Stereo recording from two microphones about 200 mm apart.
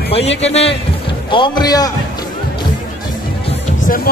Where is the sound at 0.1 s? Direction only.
30° left (ahead or behind).